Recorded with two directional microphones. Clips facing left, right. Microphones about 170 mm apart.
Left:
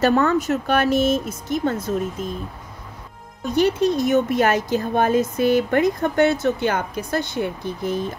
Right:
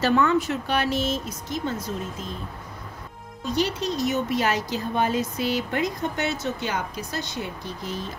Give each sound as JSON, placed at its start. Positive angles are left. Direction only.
{"t": 0.0, "sound": "speech", "side_deg": 45}
{"t": 3.4, "sound": "speech", "side_deg": 55}